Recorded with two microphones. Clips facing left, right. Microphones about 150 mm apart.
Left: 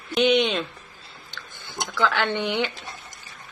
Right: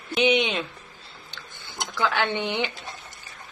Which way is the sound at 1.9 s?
15° right (ahead or behind).